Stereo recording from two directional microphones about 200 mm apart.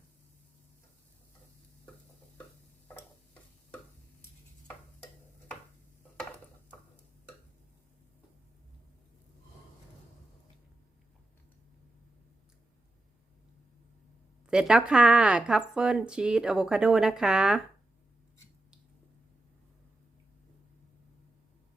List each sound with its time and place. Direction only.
14.5 s speech: 5° right (ahead or behind)